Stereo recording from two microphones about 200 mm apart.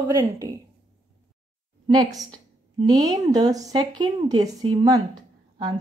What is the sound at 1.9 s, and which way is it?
A woman's voice, 20° right (ahead or behind).